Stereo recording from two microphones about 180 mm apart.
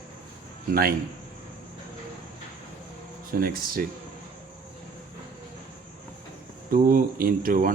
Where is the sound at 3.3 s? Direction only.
55° right (ahead or behind).